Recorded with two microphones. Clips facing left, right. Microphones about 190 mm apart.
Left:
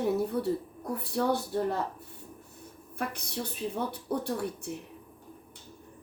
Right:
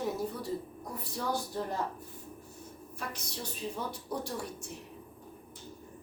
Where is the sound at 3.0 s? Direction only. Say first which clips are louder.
Left 7 dB; 60° left (ahead or behind).